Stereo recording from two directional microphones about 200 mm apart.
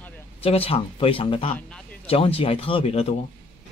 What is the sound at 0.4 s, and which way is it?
Speech, 30° left (ahead or behind).